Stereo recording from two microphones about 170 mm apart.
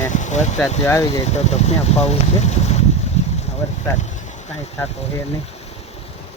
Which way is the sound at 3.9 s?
45° left (ahead or behind).